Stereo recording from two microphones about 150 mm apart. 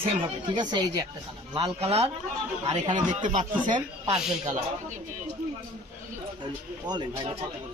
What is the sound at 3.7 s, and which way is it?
Speech, 30° right (ahead or behind).